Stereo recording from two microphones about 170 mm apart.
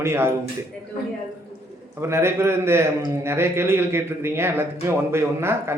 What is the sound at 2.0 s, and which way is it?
A man's voice, 15° right (ahead or behind).